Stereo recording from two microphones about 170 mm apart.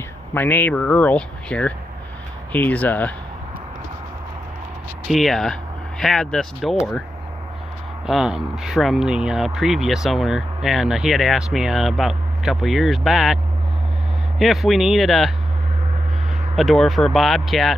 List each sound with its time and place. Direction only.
0.3 s speech: 10° left (ahead or behind)
5.0 s speech: centre (ahead or behind)
8.1 s speech: centre (ahead or behind)
14.4 s speech: centre (ahead or behind)
16.5 s speech: centre (ahead or behind)